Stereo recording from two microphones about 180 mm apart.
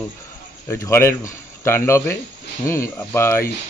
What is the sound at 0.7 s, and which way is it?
Speech, 15° left (ahead or behind).